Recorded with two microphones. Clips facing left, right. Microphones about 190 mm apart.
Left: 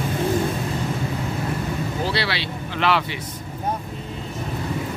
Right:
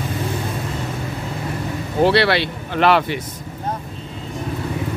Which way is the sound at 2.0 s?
60° right (ahead or behind).